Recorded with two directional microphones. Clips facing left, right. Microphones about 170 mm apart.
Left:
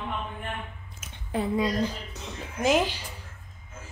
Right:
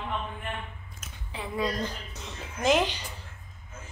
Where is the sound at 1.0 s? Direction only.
10° left (ahead or behind).